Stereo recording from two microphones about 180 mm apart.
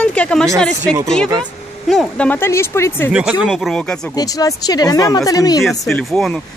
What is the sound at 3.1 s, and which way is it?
Speech, 5° right (ahead or behind).